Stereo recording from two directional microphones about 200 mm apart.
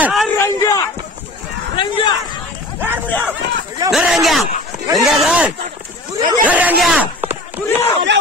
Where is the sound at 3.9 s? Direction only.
Centre (ahead or behind).